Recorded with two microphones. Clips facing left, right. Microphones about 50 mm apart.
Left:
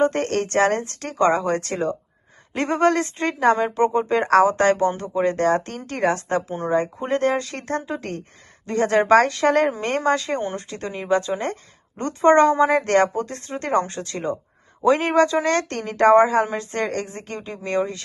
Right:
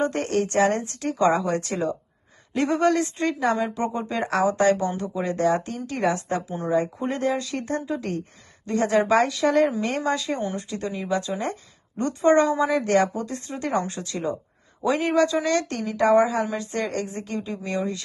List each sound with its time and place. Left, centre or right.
0.0 s a woman's voice: left